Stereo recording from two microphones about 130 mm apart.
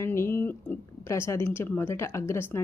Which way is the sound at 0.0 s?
20° left (ahead or behind).